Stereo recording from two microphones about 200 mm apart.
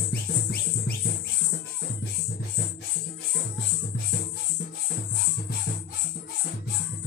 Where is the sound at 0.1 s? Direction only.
50° left (ahead or behind).